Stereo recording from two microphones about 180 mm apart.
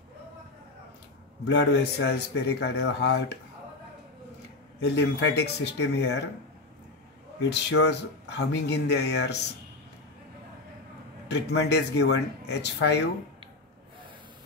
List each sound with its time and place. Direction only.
1.4 s speech: 85° left
4.8 s speech: 70° left (ahead or behind)
7.4 s speech: 75° left (ahead or behind)
11.2 s speech: 75° left (ahead or behind)